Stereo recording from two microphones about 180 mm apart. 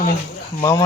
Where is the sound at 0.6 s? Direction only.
20° left (ahead or behind).